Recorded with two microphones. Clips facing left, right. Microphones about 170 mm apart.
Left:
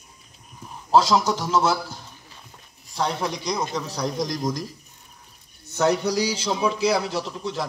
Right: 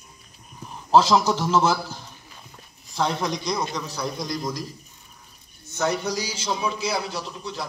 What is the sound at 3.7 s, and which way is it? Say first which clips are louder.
Speech: left 2 dB; 35° left (ahead or behind).